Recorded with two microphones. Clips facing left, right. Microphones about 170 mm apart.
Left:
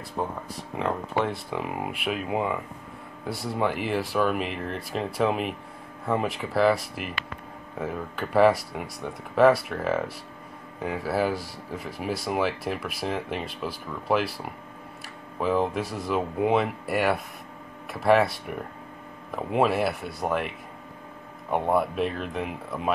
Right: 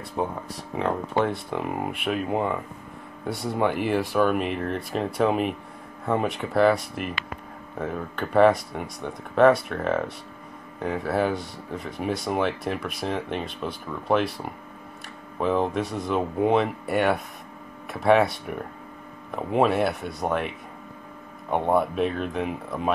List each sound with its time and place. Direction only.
0.2 s speech: 5° right (ahead or behind)